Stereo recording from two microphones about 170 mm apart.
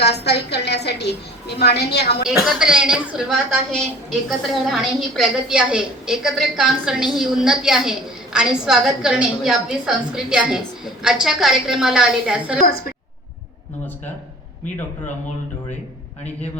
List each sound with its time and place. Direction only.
0.0 s a woman's voice: 75° left (ahead or behind)
2.4 s a woman's voice: 5° right (ahead or behind)
12.6 s a woman's voice: 60° left (ahead or behind)